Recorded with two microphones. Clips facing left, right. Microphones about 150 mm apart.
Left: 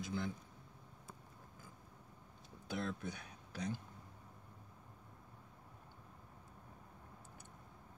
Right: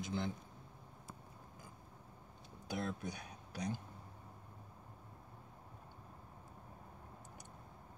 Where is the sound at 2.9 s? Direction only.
15° right (ahead or behind).